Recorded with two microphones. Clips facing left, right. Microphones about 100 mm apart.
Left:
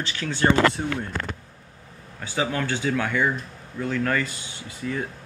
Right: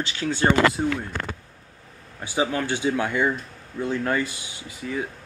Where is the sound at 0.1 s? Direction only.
20° right (ahead or behind).